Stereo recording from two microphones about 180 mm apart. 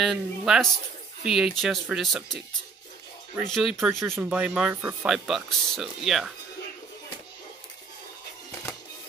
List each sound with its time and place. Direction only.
0.0 s speech: centre (ahead or behind)
3.4 s speech: centre (ahead or behind)